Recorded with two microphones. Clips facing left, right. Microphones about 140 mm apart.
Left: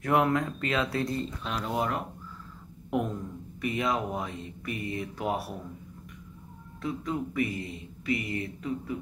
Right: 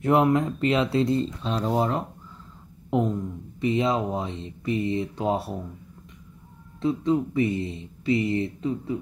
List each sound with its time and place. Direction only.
0.0 s speech: 25° right (ahead or behind)
3.6 s speech: 25° right (ahead or behind)
6.8 s speech: 25° right (ahead or behind)